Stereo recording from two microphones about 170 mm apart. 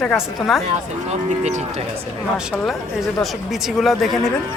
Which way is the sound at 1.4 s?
45° right (ahead or behind).